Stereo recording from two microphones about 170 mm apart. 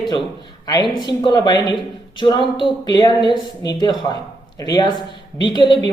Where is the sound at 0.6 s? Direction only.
25° left (ahead or behind).